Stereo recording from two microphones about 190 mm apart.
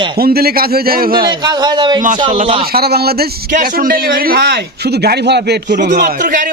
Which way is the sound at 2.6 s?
55° right (ahead or behind).